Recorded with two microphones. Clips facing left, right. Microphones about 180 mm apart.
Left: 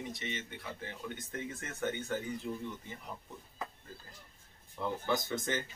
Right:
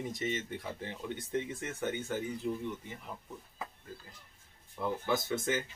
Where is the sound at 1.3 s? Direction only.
15° right (ahead or behind).